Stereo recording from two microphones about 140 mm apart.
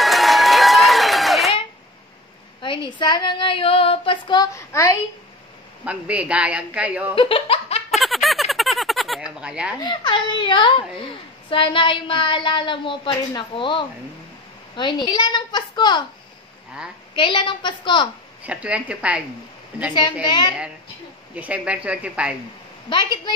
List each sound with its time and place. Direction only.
0.0 s run: centre (ahead or behind)
2.6 s speech: 35° left (ahead or behind)
4.6 s a child's voice: 20° left (ahead or behind)
5.9 s a woman's voice: 10° right (ahead or behind)
7.2 s speech: 40° left (ahead or behind)
7.9 s a sound: centre (ahead or behind)
9.8 s a woman's voice: 35° left (ahead or behind)
17.1 s a woman's voice: 35° left (ahead or behind)
18.4 s a woman's voice: 10° right (ahead or behind)
19.9 s a woman's voice: 35° left (ahead or behind)
21.4 s a woman's voice: 10° right (ahead or behind)
22.8 s a woman's voice: 35° left (ahead or behind)